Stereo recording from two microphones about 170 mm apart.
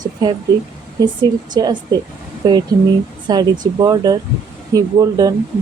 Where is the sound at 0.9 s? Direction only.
25° right (ahead or behind).